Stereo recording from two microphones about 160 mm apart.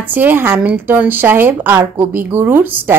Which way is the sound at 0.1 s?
10° right (ahead or behind).